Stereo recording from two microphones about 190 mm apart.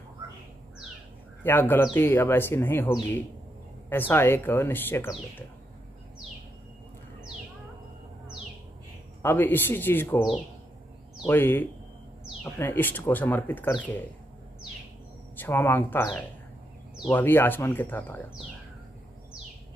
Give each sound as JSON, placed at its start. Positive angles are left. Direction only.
{"t": 1.4, "sound": "speech", "side_deg": 10}
{"t": 9.2, "sound": "speech", "side_deg": 10}
{"t": 11.2, "sound": "speech", "side_deg": 10}
{"t": 15.3, "sound": "speech", "side_deg": 10}
{"t": 17.1, "sound": "speech", "side_deg": 10}